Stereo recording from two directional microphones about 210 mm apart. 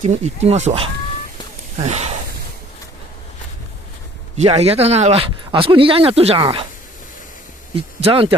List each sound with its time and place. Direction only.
0.0 s speech: 35° right (ahead or behind)
4.4 s speech: 30° right (ahead or behind)
7.7 s speech: 25° right (ahead or behind)